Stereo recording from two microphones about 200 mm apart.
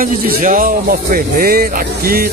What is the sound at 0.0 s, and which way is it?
Speech, 40° right (ahead or behind).